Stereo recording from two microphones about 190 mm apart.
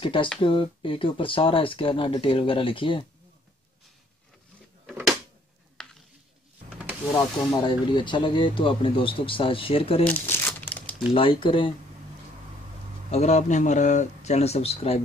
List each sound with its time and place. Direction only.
0.0 s speech: 25° left (ahead or behind)
5.8 s a sound: 5° left (ahead or behind)
7.2 s speech: 25° left (ahead or behind)
10.0 s crumpling: 10° left (ahead or behind)
11.1 s speech: 25° left (ahead or behind)
13.1 s speech: 35° left (ahead or behind)